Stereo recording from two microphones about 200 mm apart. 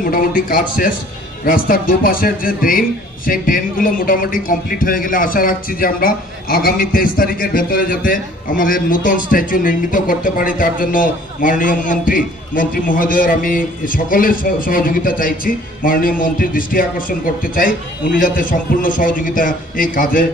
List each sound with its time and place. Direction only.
0.0 s a man's voice: 45° left (ahead or behind)